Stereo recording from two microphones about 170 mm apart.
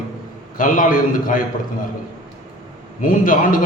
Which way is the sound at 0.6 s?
50° left (ahead or behind).